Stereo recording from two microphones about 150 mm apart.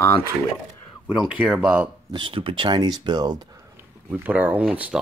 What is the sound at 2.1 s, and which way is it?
Speech, 35° right (ahead or behind).